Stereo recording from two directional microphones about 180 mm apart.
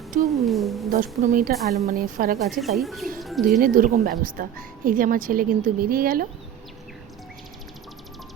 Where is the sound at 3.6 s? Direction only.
50° right (ahead or behind).